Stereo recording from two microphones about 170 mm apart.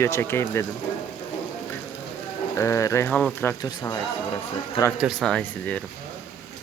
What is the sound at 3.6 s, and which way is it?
Speech, 20° left (ahead or behind).